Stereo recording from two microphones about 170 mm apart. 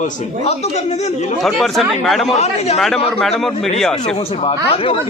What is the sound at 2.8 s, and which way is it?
Speech, centre (ahead or behind).